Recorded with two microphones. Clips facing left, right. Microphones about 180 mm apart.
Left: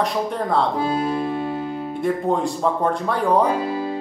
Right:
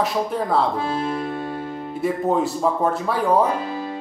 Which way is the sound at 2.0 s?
5° right (ahead or behind).